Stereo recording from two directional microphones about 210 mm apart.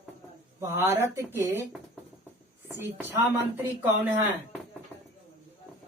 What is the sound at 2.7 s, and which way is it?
Speech, 10° right (ahead or behind).